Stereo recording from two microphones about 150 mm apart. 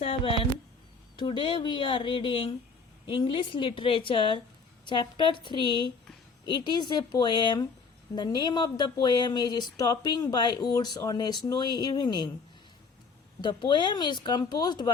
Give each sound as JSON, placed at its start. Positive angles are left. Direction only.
{"t": 0.0, "sound": "speech", "side_deg": 40}
{"t": 13.4, "sound": "speech", "side_deg": 30}